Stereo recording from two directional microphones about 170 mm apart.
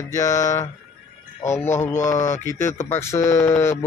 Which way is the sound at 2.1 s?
15° left (ahead or behind).